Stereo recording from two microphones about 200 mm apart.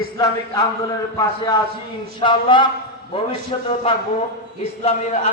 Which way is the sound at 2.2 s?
25° left (ahead or behind).